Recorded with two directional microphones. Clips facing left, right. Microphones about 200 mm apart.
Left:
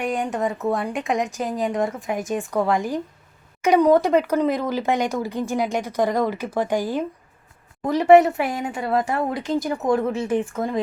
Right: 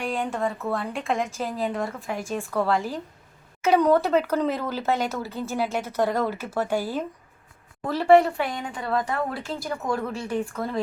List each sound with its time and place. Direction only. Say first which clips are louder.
0.2 s speech: left 3 dB; 15° left (ahead or behind)